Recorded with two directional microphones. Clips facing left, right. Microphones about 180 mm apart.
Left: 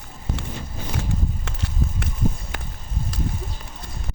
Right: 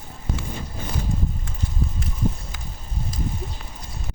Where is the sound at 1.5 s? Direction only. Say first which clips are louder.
Even; 80° left.